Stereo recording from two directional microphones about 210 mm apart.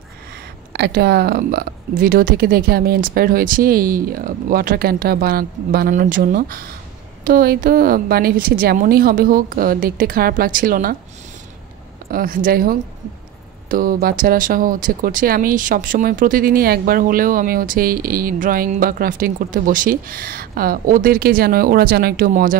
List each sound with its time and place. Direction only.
0.7 s speech: 50° right (ahead or behind)
12.1 s speech: 45° right (ahead or behind)